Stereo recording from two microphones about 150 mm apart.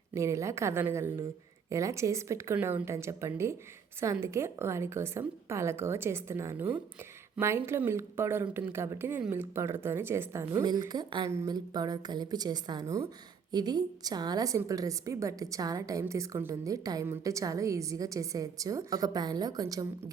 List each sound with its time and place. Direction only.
0.1 s a woman's voice: 20° right (ahead or behind)